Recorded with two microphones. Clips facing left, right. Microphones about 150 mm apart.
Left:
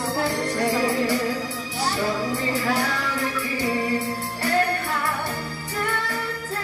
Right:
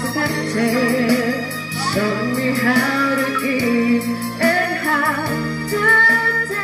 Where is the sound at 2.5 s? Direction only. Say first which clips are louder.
Right 7 dB; 85° right.